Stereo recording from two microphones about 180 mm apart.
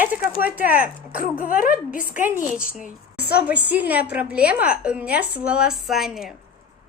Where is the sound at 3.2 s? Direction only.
60° left (ahead or behind).